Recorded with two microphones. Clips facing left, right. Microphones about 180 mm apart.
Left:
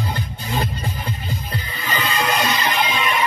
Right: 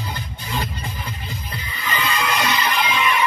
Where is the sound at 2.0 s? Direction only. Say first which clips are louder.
Left 2 dB; 40° left (ahead or behind).